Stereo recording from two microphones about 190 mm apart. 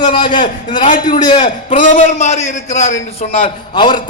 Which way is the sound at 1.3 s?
40° left (ahead or behind).